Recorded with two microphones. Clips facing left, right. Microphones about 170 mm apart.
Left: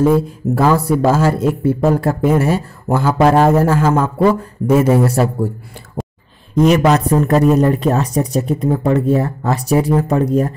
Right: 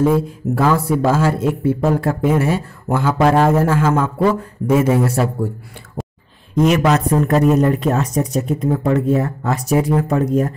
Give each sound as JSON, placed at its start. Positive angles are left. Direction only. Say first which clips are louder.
{"t": 0.0, "sound": "speech", "louder": "left 2 dB", "side_deg": 40}
{"t": 6.0, "sound": "a sound", "louder": "left 3 dB", "side_deg": 0}
{"t": 6.5, "sound": "speech", "louder": "left 3 dB", "side_deg": 35}